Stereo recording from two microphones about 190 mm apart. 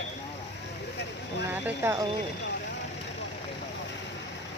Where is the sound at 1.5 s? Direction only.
10° right (ahead or behind).